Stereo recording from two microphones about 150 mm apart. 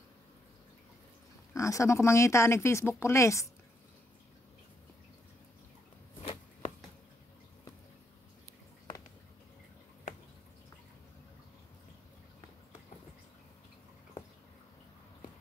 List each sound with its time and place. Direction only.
1.5 s speech: 20° left (ahead or behind)